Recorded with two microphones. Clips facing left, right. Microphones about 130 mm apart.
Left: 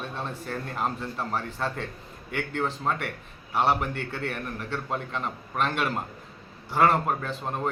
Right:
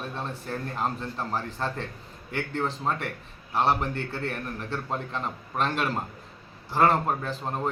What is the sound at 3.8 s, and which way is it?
Speech, 30° right (ahead or behind).